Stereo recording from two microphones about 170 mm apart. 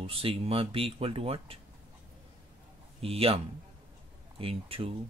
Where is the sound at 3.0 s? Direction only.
35° right (ahead or behind).